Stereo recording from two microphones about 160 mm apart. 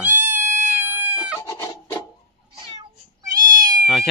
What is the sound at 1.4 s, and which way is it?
Chicken, 20° left (ahead or behind).